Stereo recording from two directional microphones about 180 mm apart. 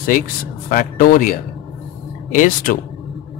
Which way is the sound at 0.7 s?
50° left (ahead or behind).